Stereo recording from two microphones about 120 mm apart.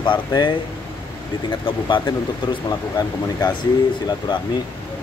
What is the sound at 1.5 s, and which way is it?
Speech, 45° left (ahead or behind).